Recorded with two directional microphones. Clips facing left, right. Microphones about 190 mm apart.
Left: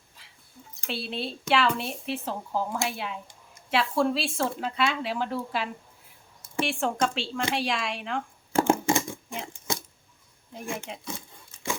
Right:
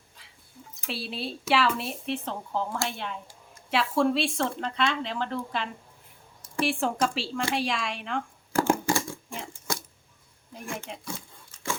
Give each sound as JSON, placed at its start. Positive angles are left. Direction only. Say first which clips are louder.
{"t": 0.9, "sound": "speech", "louder": "left 1 dB", "side_deg": 0}
{"t": 8.5, "sound": "a sound", "louder": "left 2 dB", "side_deg": 25}
{"t": 10.9, "sound": "speech", "louder": "left 1 dB", "side_deg": 0}